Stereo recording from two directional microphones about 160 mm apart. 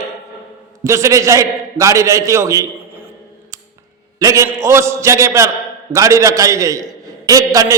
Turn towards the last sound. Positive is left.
turn(degrees=-20)  # may be behind; listen again after turning